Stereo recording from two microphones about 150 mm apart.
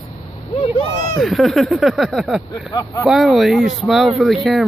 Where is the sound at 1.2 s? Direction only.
Centre (ahead or behind).